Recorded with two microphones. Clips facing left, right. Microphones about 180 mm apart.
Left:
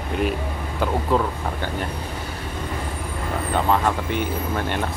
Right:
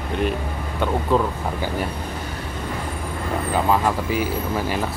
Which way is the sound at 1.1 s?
Centre (ahead or behind).